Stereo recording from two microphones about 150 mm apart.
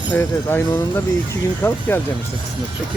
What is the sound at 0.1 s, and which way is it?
Speech, 15° left (ahead or behind).